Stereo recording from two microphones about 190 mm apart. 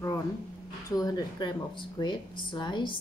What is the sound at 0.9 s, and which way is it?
A woman's voice, 20° left (ahead or behind).